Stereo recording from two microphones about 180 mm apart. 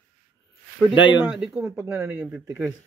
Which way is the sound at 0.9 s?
90° left.